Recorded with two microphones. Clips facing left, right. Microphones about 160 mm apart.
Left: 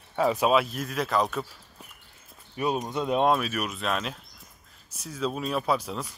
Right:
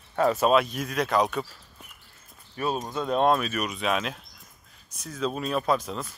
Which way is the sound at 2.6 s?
15° left (ahead or behind).